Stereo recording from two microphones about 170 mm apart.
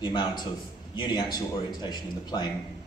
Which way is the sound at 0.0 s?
25° left (ahead or behind).